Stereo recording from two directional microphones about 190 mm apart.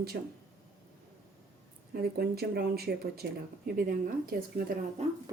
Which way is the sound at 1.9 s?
55° right (ahead or behind).